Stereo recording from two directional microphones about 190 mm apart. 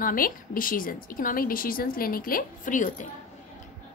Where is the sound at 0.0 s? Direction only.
45° left (ahead or behind).